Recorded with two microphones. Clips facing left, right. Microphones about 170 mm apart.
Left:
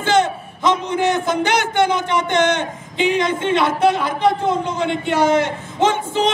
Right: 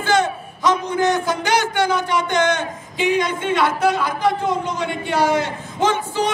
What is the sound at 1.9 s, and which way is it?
A man's voice, 20° left (ahead or behind).